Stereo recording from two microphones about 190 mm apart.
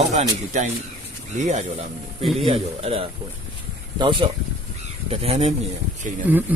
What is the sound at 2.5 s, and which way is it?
Speech, 30° right (ahead or behind).